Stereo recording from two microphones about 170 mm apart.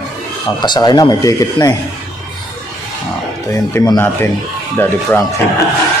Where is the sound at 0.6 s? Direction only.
25° left (ahead or behind).